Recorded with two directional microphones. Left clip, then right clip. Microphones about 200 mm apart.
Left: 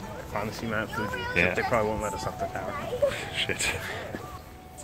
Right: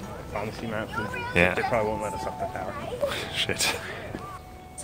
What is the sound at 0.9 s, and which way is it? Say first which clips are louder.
Speech: even; 25° left (ahead or behind).